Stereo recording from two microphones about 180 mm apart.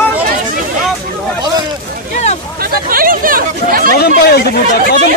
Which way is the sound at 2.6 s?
55° right (ahead or behind).